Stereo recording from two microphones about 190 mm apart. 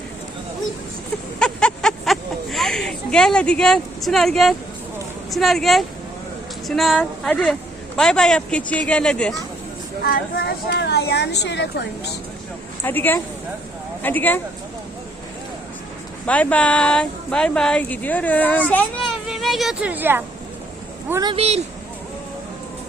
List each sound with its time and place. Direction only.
1.4 s a sound: 5° left (ahead or behind)
5.3 s speech: centre (ahead or behind)
10.0 s speech: 55° left (ahead or behind)
12.8 s speech: 10° left (ahead or behind)
16.2 s speech: 5° left (ahead or behind); by 21.3 s 20° right (ahead or behind)
21.3 s speech: 35° right (ahead or behind)